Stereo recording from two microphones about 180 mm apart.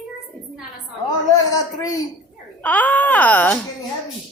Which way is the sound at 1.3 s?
20° left (ahead or behind).